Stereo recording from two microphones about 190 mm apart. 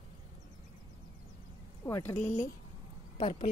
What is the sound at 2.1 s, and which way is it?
Speech, 40° left (ahead or behind).